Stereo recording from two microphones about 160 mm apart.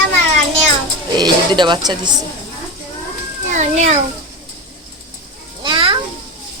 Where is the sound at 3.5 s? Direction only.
45° right (ahead or behind).